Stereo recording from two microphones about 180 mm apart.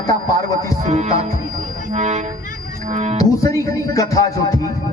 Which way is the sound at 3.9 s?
20° left (ahead or behind).